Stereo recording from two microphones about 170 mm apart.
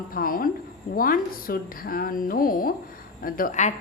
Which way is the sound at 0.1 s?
55° left (ahead or behind).